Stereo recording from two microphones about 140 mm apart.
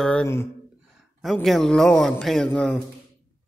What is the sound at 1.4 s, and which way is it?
A man's voice, centre (ahead or behind).